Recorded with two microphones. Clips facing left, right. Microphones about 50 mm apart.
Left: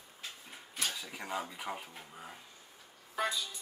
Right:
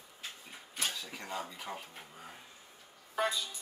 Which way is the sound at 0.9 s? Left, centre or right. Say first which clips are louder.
Left 2 dB; centre.